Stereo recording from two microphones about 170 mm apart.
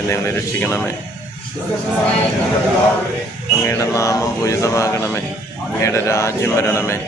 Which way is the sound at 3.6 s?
15° left (ahead or behind).